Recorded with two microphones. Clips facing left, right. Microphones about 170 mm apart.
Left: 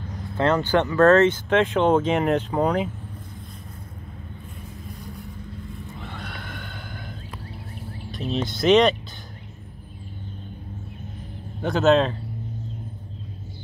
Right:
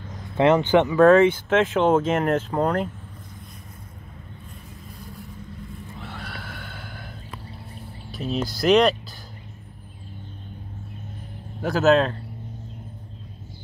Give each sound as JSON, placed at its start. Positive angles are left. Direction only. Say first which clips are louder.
{"t": 0.4, "sound": "speech", "louder": "right 3 dB", "side_deg": -15}
{"t": 5.9, "sound": "neigh", "louder": "even", "side_deg": -5}
{"t": 8.1, "sound": "speech", "louder": "even", "side_deg": 0}
{"t": 11.6, "sound": "speech", "louder": "even", "side_deg": 0}